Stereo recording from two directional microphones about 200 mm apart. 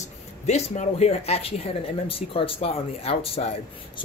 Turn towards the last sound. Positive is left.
turn(degrees=30)  # may be behind; listen again after turning